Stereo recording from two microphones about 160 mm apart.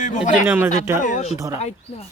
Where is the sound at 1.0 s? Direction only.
50° left (ahead or behind).